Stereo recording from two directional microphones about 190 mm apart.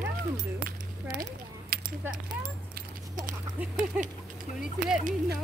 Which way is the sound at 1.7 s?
55° right (ahead or behind).